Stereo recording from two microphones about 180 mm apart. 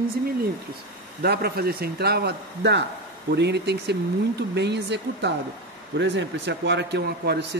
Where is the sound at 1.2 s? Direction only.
60° right (ahead or behind).